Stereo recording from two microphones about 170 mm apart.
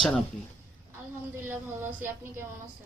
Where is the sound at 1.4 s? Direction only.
15° right (ahead or behind).